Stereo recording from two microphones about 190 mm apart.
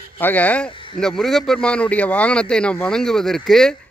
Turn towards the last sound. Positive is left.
turn(degrees=0)  # may be behind; listen again after turning